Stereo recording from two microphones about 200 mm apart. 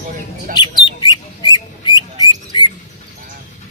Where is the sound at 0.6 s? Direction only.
20° left (ahead or behind).